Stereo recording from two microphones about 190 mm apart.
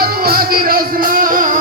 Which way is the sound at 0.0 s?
50° right (ahead or behind).